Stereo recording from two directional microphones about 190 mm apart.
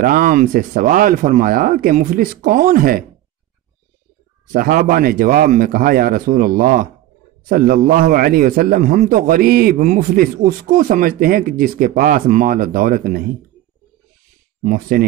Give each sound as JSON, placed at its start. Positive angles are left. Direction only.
{"t": 0.0, "sound": "speech", "side_deg": -45}
{"t": 4.5, "sound": "speech", "side_deg": -50}
{"t": 14.6, "sound": "speech", "side_deg": -45}